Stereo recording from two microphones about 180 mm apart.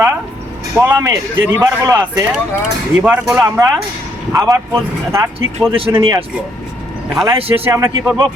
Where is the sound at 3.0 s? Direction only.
5° right (ahead or behind).